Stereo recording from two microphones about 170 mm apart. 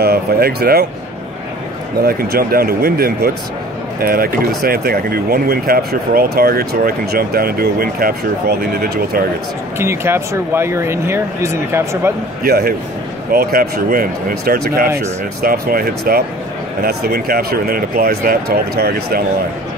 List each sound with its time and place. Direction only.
0.0 s speech: 65° right (ahead or behind)
2.0 s speech: 60° right (ahead or behind)
9.8 s speech: 15° right (ahead or behind)
12.4 s speech: 60° right (ahead or behind)